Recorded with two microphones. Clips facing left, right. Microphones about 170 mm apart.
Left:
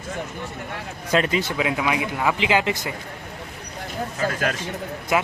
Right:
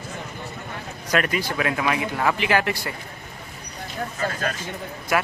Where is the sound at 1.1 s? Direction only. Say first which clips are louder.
Left 2 dB; 25° left (ahead or behind).